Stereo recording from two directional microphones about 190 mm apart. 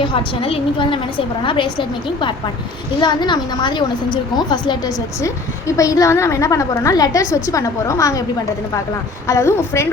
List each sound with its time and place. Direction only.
0.0 s a woman's voice: 25° left (ahead or behind)
9.2 s a woman's voice: 15° left (ahead or behind)